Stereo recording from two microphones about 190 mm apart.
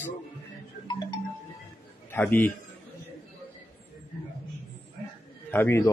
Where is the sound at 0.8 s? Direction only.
20° left (ahead or behind).